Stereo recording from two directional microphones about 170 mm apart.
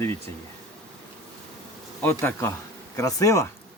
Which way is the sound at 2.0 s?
15° left (ahead or behind).